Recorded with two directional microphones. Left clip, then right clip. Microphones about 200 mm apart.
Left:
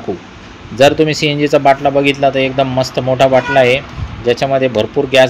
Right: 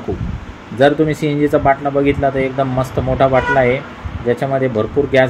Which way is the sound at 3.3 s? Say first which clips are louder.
Left 3 dB; 30° left (ahead or behind).